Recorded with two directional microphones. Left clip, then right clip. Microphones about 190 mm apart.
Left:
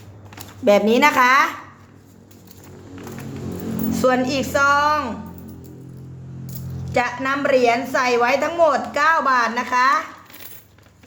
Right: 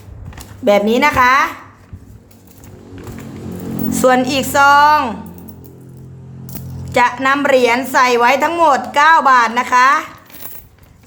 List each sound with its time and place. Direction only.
0.6 s a woman's voice: centre (ahead or behind)
3.9 s a woman's voice: 15° right (ahead or behind)
6.4 s a woman's voice: 10° right (ahead or behind)